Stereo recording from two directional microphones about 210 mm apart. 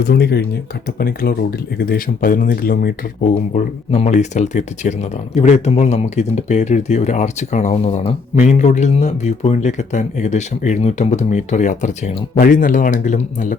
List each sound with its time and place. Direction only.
0.0 s speech: 50° left (ahead or behind)